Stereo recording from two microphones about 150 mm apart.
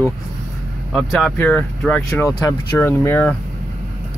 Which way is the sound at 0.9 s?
5° left (ahead or behind).